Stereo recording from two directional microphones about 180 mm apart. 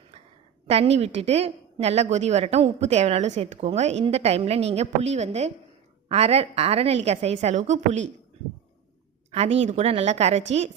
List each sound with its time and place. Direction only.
0.7 s a woman's voice: 35° right (ahead or behind)
9.3 s a woman's voice: 35° right (ahead or behind)